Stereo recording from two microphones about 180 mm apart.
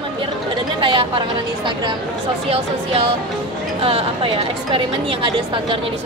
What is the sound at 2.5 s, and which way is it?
A woman's voice, 35° right (ahead or behind).